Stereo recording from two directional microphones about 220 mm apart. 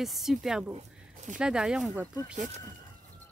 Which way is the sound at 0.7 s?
30° right (ahead or behind).